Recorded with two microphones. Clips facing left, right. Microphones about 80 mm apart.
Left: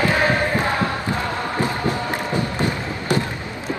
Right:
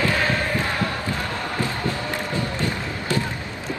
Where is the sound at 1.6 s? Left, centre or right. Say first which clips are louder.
Left 4 dB; left.